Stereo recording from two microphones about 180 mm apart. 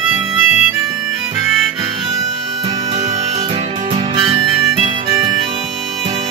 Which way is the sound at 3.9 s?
30° right (ahead or behind).